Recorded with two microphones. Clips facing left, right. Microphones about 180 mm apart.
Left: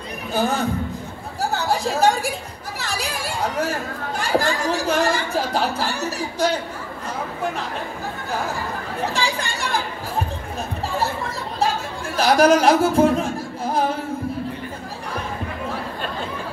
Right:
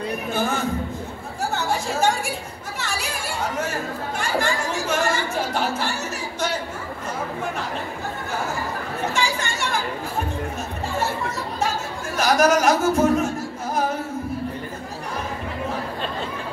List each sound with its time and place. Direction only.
0.3 s speech: 35° left (ahead or behind)
1.5 s a sound: 35° left (ahead or behind)
2.8 s speech: 35° left (ahead or behind)
9.1 s speech: 35° left (ahead or behind)
12.2 s speech: 30° left (ahead or behind)